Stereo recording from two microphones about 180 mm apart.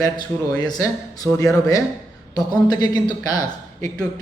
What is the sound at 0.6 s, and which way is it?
Speech, 20° left (ahead or behind).